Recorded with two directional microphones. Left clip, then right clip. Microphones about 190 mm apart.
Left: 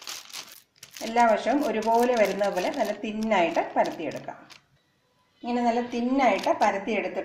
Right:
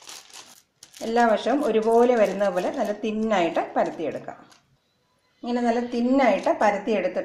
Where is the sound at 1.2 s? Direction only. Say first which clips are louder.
Even; 30° right (ahead or behind).